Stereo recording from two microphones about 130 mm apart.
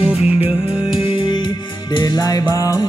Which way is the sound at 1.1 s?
35° left (ahead or behind).